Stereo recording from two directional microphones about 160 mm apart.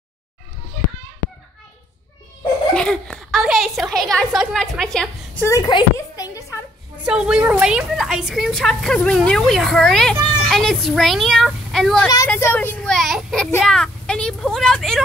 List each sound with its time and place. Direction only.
2.7 s a woman's voice: 5° left (ahead or behind)
5.4 s a woman's voice: 20° left (ahead or behind)
7.0 s a woman's voice: 5° right (ahead or behind)